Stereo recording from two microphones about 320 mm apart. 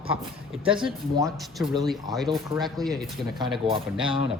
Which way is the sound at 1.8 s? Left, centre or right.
Centre.